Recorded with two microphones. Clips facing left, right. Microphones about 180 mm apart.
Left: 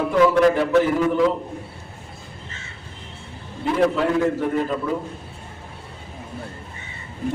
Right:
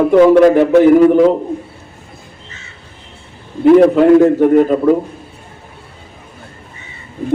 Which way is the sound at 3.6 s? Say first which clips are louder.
Right 13 dB; 50° right (ahead or behind).